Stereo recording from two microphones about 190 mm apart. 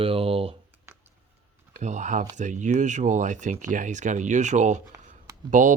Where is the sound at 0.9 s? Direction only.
15° right (ahead or behind).